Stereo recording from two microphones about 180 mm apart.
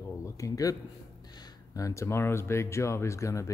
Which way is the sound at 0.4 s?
20° left (ahead or behind).